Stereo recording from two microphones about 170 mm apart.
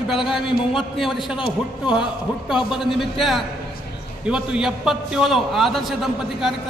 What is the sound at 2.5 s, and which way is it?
A man's voice, centre (ahead or behind).